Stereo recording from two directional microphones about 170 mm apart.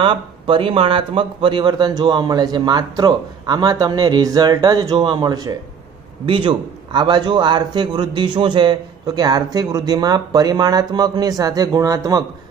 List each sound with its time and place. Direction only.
0.0 s a man's voice: 30° right (ahead or behind)